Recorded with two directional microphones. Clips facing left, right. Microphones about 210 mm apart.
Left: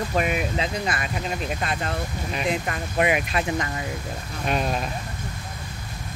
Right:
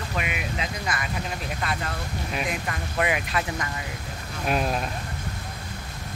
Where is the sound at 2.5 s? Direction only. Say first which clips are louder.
Left 4 dB; 25° left (ahead or behind).